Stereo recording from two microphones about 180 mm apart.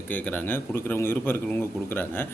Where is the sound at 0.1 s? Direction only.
10° left (ahead or behind).